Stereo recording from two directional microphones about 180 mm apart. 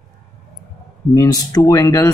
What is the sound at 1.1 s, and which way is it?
Speech, 20° left (ahead or behind).